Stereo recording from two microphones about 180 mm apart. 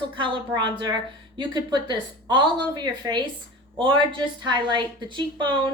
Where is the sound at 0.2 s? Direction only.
25° right (ahead or behind).